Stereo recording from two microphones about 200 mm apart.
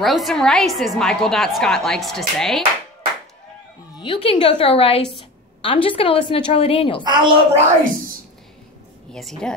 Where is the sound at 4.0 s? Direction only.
25° left (ahead or behind).